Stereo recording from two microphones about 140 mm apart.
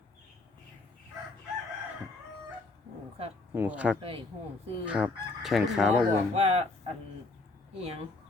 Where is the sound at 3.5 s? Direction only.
15° right (ahead or behind).